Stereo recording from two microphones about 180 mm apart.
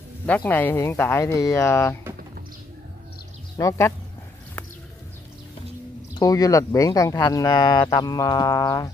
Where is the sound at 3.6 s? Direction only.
15° left (ahead or behind).